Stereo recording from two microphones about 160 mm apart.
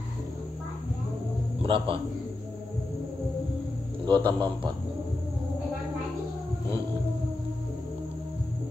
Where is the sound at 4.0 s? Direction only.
30° right (ahead or behind).